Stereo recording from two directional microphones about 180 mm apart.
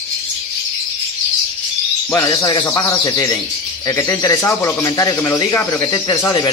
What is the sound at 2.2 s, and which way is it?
Speech, 20° left (ahead or behind).